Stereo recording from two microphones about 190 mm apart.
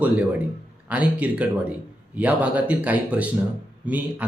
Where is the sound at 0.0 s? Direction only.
10° right (ahead or behind).